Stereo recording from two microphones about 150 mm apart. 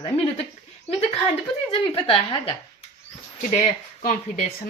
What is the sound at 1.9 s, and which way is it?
Speech, 35° left (ahead or behind).